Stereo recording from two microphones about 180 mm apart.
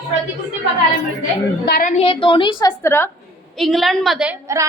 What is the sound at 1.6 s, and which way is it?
Speech, 60° left (ahead or behind).